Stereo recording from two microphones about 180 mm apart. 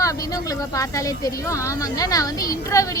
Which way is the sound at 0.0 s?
20° left (ahead or behind).